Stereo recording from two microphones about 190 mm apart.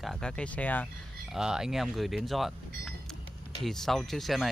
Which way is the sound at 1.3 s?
5° right (ahead or behind).